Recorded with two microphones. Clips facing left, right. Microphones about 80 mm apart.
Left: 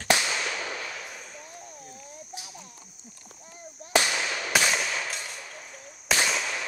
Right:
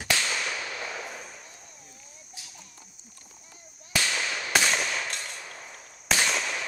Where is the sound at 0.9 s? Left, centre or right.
Centre.